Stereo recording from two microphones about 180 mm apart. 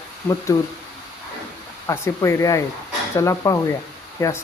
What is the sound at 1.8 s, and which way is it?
Speech, 15° left (ahead or behind).